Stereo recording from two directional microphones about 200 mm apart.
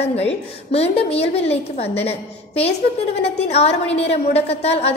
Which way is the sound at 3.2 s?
30° left (ahead or behind).